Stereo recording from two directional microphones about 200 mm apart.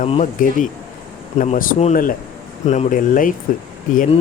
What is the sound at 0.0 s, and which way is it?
A man's voice, 35° left (ahead or behind).